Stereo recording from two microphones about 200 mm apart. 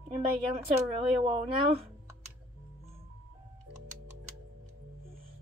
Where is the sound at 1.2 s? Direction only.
30° right (ahead or behind).